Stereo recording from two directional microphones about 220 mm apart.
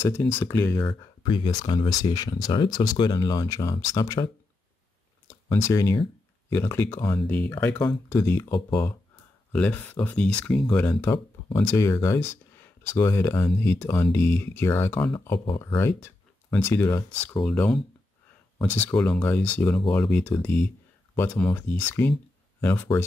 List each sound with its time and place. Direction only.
0.2 s speech: 10° left (ahead or behind)
0.8 s speech: 20° left (ahead or behind)
5.5 s speech: 15° left (ahead or behind)
15.1 s speech: 20° left (ahead or behind)
16.0 s speech: 10° left (ahead or behind)
18.9 s speech: 5° left (ahead or behind)